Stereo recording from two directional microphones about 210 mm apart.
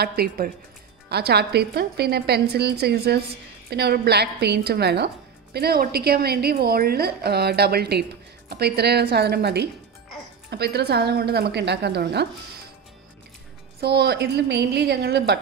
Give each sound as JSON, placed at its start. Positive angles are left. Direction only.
{"t": 0.0, "sound": "a woman's voice", "side_deg": -50}
{"t": 13.7, "sound": "a woman's voice", "side_deg": -50}